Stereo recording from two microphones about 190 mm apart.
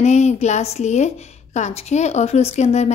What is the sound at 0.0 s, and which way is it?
A woman's voice, 35° left (ahead or behind).